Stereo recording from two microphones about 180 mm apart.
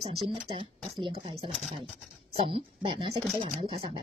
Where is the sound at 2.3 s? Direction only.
30° right (ahead or behind).